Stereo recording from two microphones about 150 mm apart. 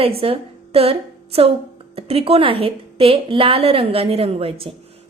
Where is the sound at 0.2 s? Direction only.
40° right (ahead or behind).